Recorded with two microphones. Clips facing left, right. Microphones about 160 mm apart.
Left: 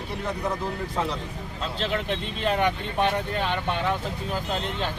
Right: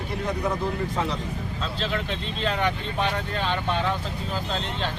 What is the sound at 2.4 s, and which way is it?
Speech, 15° left (ahead or behind).